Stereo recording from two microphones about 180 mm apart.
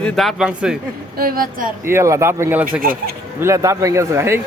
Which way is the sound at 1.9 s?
15° right (ahead or behind).